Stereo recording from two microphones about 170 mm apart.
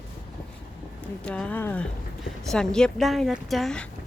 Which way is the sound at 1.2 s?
5° left (ahead or behind).